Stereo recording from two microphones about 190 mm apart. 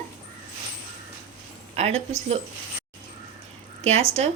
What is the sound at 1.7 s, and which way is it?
Speech, 35° right (ahead or behind).